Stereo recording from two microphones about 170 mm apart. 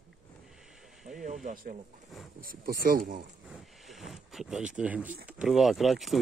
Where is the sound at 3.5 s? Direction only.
Centre (ahead or behind).